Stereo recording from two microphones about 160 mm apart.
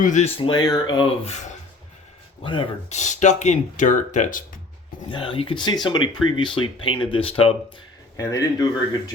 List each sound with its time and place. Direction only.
0.0 s speech: 50° left (ahead or behind)
0.3 s speech: 30° left (ahead or behind)
2.4 s speech: 30° left (ahead or behind)
2.9 s speech: 50° left (ahead or behind)
5.0 s speech: 30° left (ahead or behind)
8.1 s speech: 20° left (ahead or behind)